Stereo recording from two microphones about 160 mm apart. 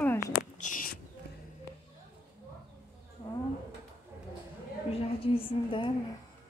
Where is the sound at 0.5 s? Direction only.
55° left (ahead or behind).